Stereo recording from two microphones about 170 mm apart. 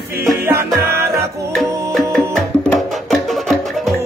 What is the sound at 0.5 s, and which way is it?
Music, 15° right (ahead or behind).